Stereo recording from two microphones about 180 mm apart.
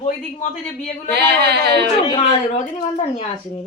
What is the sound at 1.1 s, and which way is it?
Speech, 65° right (ahead or behind).